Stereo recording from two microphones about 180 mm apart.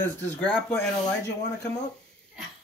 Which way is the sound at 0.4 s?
10° left (ahead or behind).